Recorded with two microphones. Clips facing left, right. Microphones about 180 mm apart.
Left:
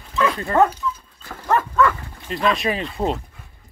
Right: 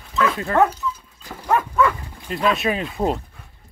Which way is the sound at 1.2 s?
15° right (ahead or behind).